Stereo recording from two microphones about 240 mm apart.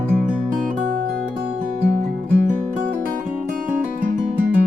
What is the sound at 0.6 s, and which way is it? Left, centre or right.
Music, right.